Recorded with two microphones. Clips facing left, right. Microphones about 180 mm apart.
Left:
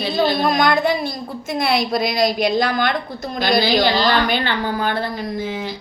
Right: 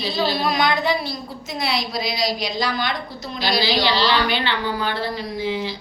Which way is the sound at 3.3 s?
50° left (ahead or behind).